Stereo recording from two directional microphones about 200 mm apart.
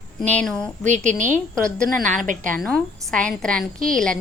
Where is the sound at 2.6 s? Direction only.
Centre (ahead or behind).